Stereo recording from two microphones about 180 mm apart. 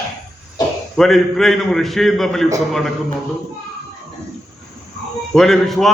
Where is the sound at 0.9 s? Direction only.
Centre (ahead or behind).